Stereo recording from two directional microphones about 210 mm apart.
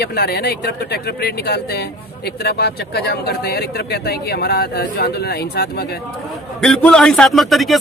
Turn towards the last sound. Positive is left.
turn(degrees=0)  # may be behind; listen again after turning